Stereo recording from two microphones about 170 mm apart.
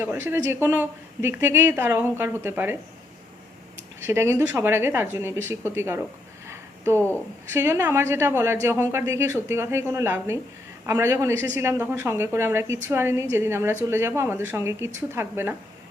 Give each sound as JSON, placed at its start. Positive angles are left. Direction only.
{"t": 0.0, "sound": "a woman's voice", "side_deg": -10}
{"t": 4.0, "sound": "a woman's voice", "side_deg": -15}
{"t": 6.5, "sound": "a sound", "side_deg": -15}
{"t": 7.5, "sound": "a woman's voice", "side_deg": -15}